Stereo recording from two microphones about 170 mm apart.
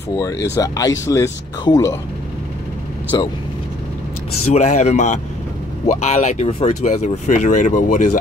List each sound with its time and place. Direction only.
0.1 s speech: 20° left (ahead or behind)
3.1 s speech: 25° left (ahead or behind)
4.6 s speech: 45° left (ahead or behind)